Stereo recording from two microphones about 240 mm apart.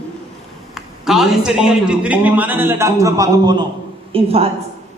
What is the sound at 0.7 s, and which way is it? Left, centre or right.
A man's voice, centre.